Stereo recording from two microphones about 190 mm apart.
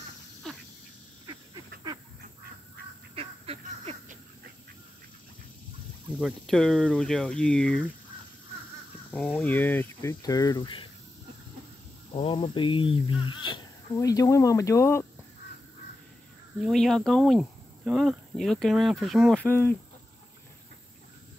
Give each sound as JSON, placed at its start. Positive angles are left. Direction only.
{"t": 3.2, "sound": "a sound", "side_deg": -35}
{"t": 6.1, "sound": "speech", "side_deg": 0}
{"t": 9.1, "sound": "speech", "side_deg": 5}
{"t": 12.1, "sound": "speech", "side_deg": 30}
{"t": 16.6, "sound": "speech", "side_deg": 0}